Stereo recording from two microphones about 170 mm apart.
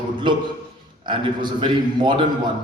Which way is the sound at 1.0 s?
30° right (ahead or behind).